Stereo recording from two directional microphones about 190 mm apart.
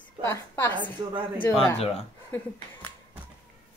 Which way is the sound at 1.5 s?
30° left (ahead or behind).